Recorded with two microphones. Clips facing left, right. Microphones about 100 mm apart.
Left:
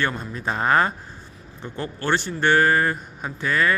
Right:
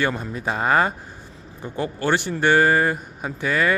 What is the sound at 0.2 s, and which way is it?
A man's voice, 10° right (ahead or behind).